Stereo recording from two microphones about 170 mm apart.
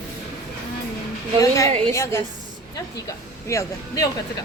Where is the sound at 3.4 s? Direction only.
20° left (ahead or behind).